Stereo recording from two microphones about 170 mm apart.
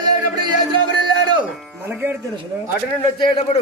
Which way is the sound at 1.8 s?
15° right (ahead or behind).